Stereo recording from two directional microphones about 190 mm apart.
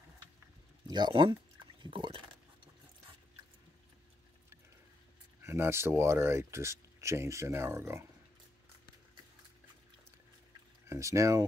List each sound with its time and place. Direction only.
0.8 s speech: 25° right (ahead or behind)
5.4 s speech: 15° right (ahead or behind)
10.9 s speech: 15° right (ahead or behind)